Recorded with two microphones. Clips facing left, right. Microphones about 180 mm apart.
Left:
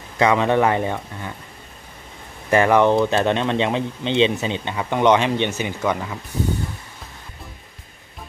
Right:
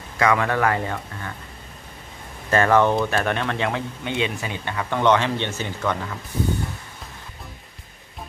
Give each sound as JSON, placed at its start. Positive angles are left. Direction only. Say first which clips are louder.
{"t": 0.2, "sound": "speech", "louder": "left 3 dB", "side_deg": 20}
{"t": 2.5, "sound": "speech", "louder": "left 3 dB", "side_deg": 15}